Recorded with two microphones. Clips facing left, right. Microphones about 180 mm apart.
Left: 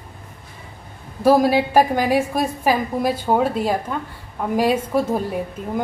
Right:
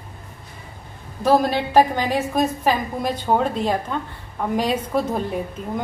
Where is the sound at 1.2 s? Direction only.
10° left (ahead or behind).